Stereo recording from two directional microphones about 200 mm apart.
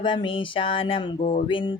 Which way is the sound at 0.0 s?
25° left (ahead or behind).